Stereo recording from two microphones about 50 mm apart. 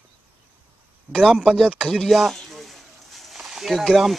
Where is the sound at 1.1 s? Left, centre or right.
Right.